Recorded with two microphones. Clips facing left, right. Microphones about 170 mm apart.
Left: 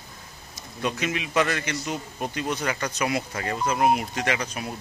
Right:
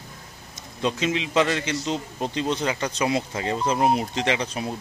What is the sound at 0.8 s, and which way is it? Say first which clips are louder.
Speech: right 3 dB; 20° right (ahead or behind).